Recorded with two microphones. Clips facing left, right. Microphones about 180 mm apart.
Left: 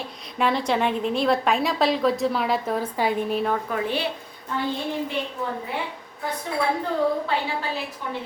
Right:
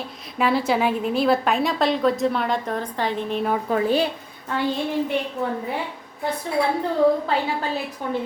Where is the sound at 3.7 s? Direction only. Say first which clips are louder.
Right 6 dB; 40° right (ahead or behind).